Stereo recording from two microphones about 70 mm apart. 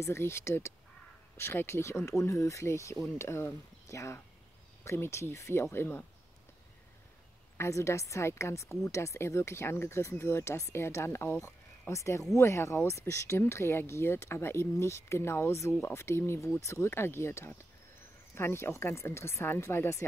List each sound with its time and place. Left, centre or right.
0.0 s speech: left
7.5 s speech: left